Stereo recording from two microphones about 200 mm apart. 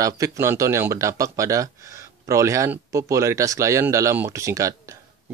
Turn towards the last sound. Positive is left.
turn(degrees=-15)  # may be behind; listen again after turning